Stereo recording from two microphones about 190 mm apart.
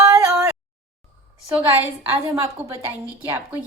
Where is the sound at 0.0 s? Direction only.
15° right (ahead or behind).